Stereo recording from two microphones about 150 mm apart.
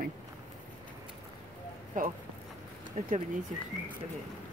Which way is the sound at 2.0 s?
60° right (ahead or behind).